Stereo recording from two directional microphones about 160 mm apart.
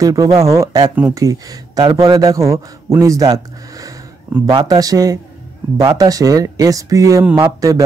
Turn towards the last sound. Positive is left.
turn(degrees=-25)  # may be behind; listen again after turning